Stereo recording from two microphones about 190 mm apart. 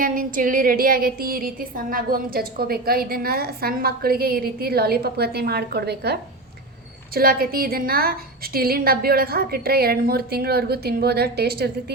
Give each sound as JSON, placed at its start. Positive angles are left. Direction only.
{"t": 0.0, "sound": "a woman's voice", "side_deg": -45}